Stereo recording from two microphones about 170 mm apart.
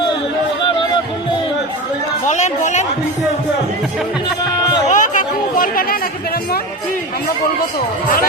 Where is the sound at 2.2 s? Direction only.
45° left (ahead or behind).